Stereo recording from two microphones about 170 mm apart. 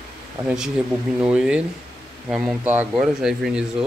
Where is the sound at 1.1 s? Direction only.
5° right (ahead or behind).